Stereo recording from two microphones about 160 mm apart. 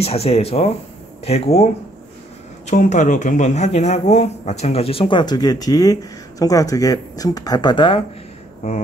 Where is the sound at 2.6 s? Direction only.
50° left (ahead or behind); by 8.0 s 30° left (ahead or behind).